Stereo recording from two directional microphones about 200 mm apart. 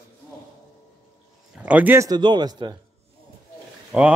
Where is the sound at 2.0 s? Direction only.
20° right (ahead or behind).